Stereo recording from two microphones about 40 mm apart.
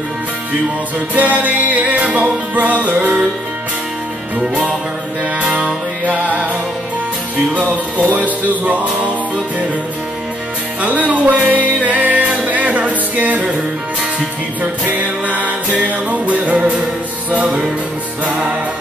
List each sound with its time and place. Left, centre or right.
1.1 s music: right
4.4 s music: right
5.4 s music: right
10.8 s music: right
14.6 s music: right